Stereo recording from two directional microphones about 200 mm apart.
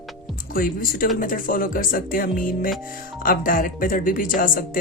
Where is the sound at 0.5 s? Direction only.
45° left (ahead or behind).